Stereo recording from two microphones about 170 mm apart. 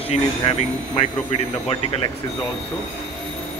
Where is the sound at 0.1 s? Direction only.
40° left (ahead or behind).